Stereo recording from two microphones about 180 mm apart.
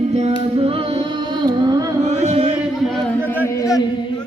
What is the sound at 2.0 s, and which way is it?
Music, 40° right (ahead or behind).